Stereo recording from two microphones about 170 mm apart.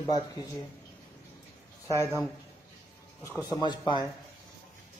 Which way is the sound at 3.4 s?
20° left (ahead or behind).